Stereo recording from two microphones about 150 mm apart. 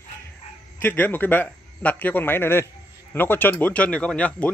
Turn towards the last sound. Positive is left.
turn(degrees=10)  # may be behind; listen again after turning